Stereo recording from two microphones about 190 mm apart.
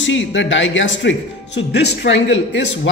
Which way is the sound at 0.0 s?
80° left.